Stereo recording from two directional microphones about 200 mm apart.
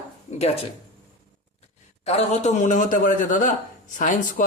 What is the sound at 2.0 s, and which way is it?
A woman's voice, 35° left (ahead or behind).